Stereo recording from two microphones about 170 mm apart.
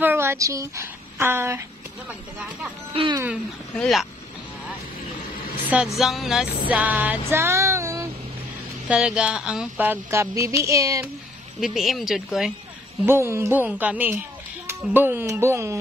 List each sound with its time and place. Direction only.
0.0 s speech: 15° right (ahead or behind)
2.9 s speech: 30° right (ahead or behind)
3.7 s speech: centre (ahead or behind)
5.9 s speech: centre (ahead or behind)
6.7 s music: 10° right (ahead or behind)
8.8 s speech: 5° right (ahead or behind)
11.6 s speech: centre (ahead or behind)
13.0 s speech: 15° right (ahead or behind)